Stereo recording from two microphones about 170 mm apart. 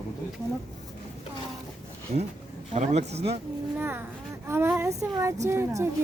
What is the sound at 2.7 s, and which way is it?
Speech, 40° right (ahead or behind).